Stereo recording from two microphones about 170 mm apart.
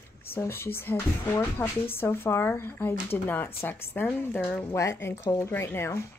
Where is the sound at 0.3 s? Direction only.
15° left (ahead or behind).